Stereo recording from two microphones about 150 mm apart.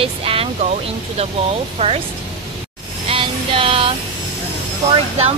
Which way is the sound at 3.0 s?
35° right (ahead or behind).